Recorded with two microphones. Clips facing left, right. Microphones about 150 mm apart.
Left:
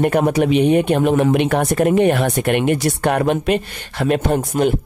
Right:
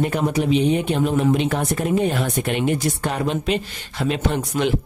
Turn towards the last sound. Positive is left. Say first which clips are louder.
# left 4 dB
turn(degrees=45)  # may be behind; listen again after turning